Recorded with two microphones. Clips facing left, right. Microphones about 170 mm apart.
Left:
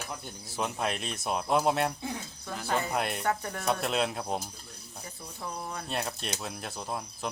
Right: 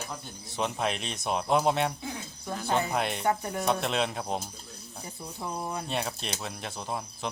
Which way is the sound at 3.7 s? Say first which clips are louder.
Even; centre (ahead or behind).